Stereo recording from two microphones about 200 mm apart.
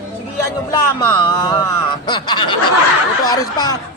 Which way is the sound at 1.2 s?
20° left (ahead or behind).